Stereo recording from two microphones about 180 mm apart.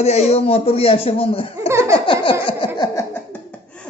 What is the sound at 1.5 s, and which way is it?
Laughter, 15° right (ahead or behind).